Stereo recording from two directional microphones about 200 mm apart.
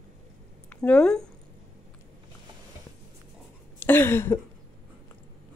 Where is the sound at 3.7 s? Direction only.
10° left (ahead or behind).